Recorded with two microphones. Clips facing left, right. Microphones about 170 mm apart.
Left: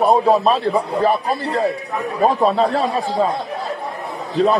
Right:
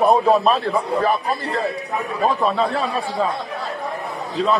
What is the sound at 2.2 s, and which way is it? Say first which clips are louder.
Speech: left 4 dB; 35° left (ahead or behind).